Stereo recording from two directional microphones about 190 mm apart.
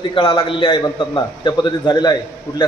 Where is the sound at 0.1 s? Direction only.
25° left (ahead or behind).